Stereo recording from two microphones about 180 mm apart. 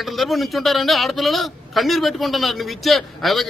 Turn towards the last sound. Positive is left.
turn(degrees=0)  # may be behind; listen again after turning